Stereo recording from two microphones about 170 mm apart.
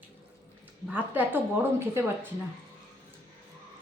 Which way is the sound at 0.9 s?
10° right (ahead or behind).